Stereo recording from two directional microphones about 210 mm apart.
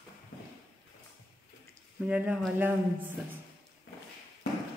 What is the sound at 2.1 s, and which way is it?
Speech, 5° right (ahead or behind).